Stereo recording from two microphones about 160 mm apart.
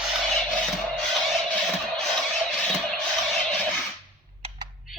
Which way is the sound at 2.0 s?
5° left (ahead or behind).